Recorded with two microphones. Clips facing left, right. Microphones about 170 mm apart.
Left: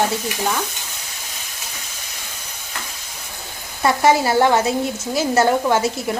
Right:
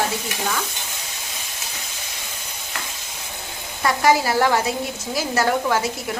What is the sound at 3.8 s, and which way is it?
Sizzle, 25° left (ahead or behind).